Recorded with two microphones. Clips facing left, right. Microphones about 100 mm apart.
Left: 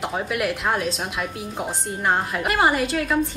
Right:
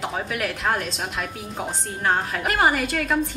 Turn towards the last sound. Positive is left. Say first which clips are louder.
# left 1 dB
turn(degrees=0)  # may be behind; listen again after turning